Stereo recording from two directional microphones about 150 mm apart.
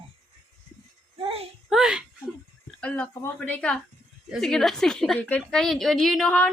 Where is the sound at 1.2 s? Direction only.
40° right (ahead or behind).